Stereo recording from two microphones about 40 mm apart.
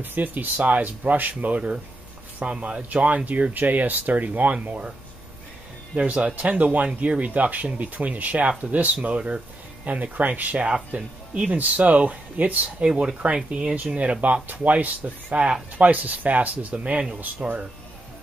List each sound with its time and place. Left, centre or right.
0.0 s speech: right
1.4 s speech: right
5.9 s speech: right
12.6 s speech: right